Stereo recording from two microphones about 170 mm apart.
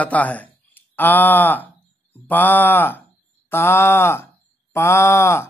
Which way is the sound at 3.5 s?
15° left (ahead or behind).